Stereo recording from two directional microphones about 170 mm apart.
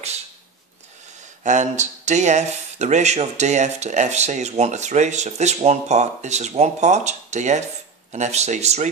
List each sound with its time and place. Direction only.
1.4 s speech: 45° right (ahead or behind)